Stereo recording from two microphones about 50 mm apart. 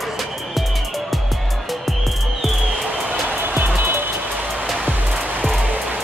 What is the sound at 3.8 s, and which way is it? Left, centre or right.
Music, right.